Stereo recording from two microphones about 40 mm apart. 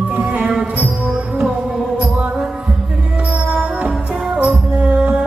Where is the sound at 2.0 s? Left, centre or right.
Right.